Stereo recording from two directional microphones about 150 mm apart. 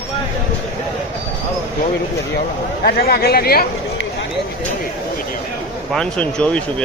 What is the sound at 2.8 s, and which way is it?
Speech, 90° left.